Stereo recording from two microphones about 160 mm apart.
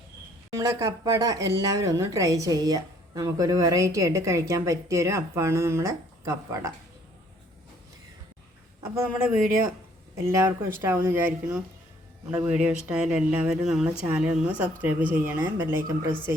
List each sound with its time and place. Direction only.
0.5 s speech: 20° right (ahead or behind)
9.0 s speech: 15° right (ahead or behind)